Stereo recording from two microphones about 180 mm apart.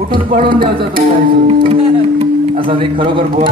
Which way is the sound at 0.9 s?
55° right (ahead or behind).